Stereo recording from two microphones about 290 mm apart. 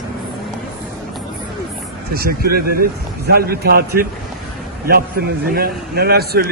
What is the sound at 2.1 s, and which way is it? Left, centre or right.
A man's voice, right.